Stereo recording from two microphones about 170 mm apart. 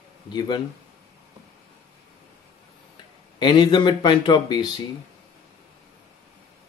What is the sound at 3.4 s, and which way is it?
Speech, 25° left (ahead or behind).